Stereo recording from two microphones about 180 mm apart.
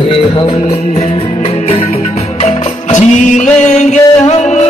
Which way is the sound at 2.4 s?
40° left (ahead or behind).